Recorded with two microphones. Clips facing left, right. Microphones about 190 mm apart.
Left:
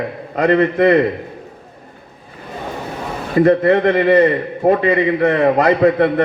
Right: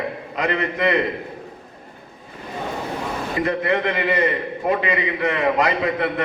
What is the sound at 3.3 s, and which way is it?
A man's voice, 45° left (ahead or behind).